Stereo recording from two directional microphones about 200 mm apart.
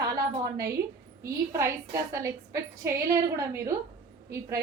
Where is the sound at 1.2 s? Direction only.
15° right (ahead or behind).